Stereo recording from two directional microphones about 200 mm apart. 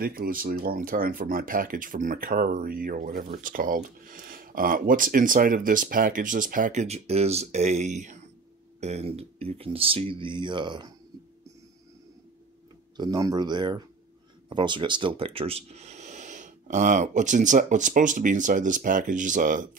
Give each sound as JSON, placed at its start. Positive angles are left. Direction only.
{"t": 0.0, "sound": "speech", "side_deg": -45}
{"t": 12.9, "sound": "speech", "side_deg": -20}